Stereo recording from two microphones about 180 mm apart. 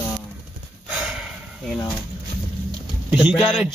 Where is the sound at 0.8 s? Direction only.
5° right (ahead or behind).